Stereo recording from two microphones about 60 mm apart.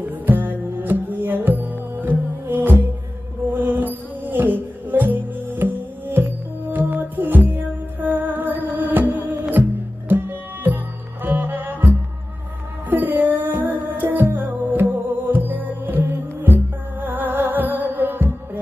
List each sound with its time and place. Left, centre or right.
0.0 s music: right
12.9 s music: right